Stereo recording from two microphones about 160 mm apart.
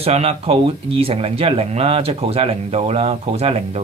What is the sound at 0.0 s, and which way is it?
Speech, 40° right (ahead or behind).